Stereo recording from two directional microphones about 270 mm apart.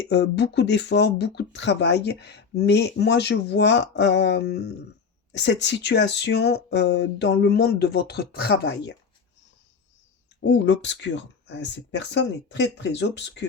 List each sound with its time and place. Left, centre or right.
0.1 s speech: left
10.4 s speech: left